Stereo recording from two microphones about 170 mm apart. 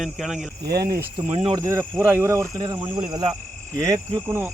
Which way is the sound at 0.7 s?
70° right (ahead or behind).